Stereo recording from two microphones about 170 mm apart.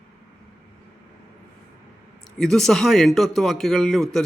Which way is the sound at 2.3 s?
Centre (ahead or behind).